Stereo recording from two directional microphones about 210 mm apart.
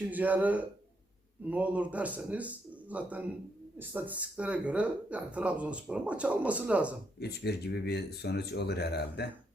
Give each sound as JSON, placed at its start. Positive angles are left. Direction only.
{"t": 0.1, "sound": "speech", "side_deg": -5}
{"t": 7.2, "sound": "speech", "side_deg": 50}